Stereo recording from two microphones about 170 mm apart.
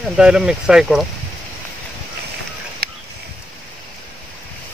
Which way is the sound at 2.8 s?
60° right (ahead or behind).